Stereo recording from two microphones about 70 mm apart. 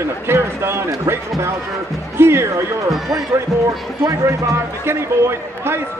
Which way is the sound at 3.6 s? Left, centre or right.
Right.